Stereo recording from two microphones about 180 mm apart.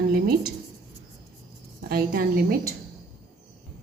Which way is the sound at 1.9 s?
55° right (ahead or behind).